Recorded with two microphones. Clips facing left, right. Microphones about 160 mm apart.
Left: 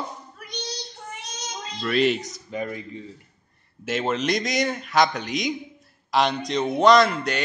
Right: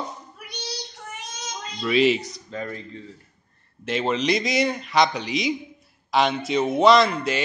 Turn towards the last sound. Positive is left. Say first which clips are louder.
# even
turn(degrees=0)  # may be behind; listen again after turning